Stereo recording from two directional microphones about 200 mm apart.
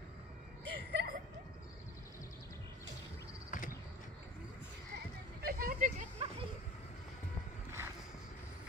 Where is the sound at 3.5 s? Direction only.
40° left (ahead or behind).